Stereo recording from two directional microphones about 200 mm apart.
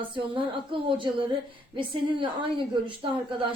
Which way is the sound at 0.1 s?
25° right (ahead or behind).